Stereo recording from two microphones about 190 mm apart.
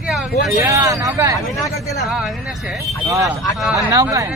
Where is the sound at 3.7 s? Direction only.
15° right (ahead or behind).